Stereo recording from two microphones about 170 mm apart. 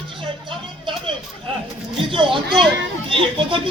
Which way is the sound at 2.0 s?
30° right (ahead or behind).